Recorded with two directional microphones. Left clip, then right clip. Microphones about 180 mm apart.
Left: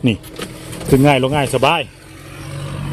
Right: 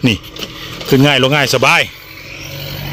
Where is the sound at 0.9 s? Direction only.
5° right (ahead or behind).